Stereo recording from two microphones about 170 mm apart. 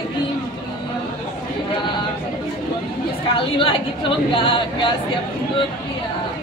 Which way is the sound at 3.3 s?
30° left (ahead or behind).